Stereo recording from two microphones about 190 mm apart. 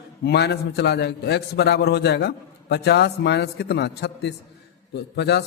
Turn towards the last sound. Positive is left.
turn(degrees=60)  # may be behind; listen again after turning